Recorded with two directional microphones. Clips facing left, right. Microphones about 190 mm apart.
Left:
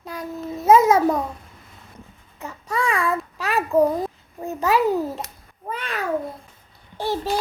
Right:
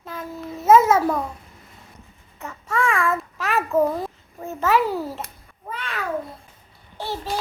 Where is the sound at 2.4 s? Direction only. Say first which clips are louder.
Left 1 dB; 10° left (ahead or behind).